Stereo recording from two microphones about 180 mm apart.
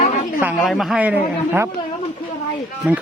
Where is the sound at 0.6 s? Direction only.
Centre (ahead or behind).